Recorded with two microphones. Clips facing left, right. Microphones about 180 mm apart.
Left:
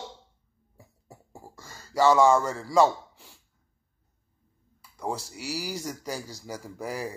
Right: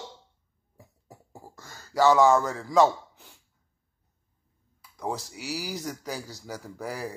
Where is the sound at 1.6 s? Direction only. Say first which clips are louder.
Even; 10° left (ahead or behind).